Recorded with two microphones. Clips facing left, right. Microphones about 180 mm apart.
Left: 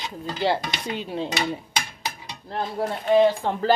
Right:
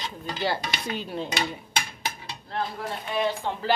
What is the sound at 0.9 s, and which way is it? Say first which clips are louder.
Speech: left 4 dB; 20° left (ahead or behind).